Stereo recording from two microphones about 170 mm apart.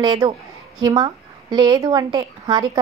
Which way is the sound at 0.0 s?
25° right (ahead or behind).